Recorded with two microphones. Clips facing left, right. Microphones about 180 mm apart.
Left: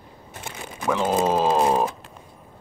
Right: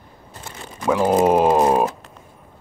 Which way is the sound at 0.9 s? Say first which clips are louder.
Right 5 dB; 15° right (ahead or behind).